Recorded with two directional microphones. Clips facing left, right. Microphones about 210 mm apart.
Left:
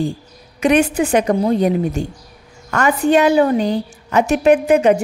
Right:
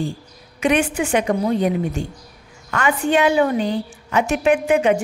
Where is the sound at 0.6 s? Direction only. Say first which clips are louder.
Left 4 dB; 40° left (ahead or behind).